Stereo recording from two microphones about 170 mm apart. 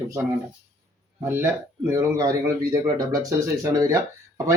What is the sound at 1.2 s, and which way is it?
A man's voice, 15° right (ahead or behind).